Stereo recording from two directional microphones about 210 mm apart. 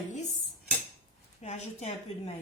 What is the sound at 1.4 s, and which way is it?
Speech, 30° left (ahead or behind).